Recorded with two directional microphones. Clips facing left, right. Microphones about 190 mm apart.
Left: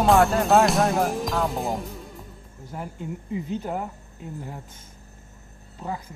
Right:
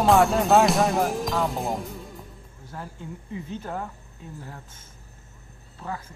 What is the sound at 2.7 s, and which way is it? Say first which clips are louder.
Speech: left 4 dB; 20° left (ahead or behind).